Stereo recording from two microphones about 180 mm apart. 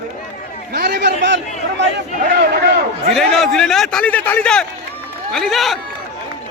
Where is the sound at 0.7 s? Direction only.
65° right (ahead or behind).